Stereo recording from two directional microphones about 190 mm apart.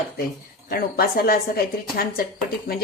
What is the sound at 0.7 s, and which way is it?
A woman's voice, 50° left (ahead or behind).